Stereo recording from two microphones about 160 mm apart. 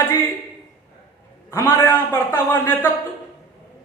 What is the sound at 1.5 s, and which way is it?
A man's voice, 15° left (ahead or behind).